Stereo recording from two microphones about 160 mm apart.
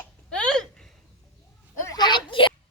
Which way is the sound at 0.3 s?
5° left (ahead or behind).